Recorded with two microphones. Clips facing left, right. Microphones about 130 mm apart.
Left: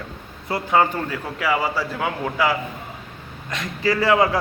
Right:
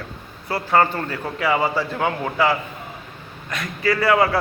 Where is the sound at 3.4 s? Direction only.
25° left (ahead or behind).